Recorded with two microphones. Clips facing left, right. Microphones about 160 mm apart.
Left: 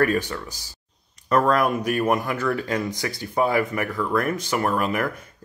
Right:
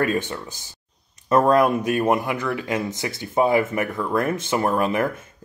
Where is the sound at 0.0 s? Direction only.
20° right (ahead or behind).